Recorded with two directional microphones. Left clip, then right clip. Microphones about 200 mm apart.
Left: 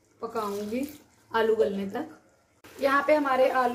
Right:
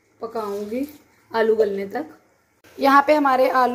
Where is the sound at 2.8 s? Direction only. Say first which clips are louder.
Right 8 dB; 25° right (ahead or behind).